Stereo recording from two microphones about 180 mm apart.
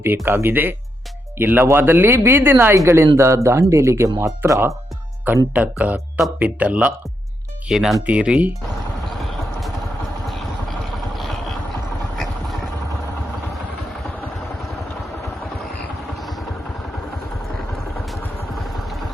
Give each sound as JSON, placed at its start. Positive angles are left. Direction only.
{"t": 0.3, "sound": "speech", "side_deg": -10}
{"t": 9.2, "sound": "vehicle", "side_deg": 0}
{"t": 16.1, "sound": "vehicle", "side_deg": 0}
{"t": 17.9, "sound": "vehicle", "side_deg": 0}